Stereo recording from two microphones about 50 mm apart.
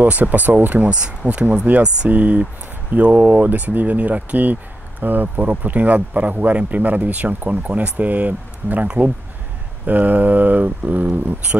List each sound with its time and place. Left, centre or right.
0.0 s speech: right
0.8 s speech: right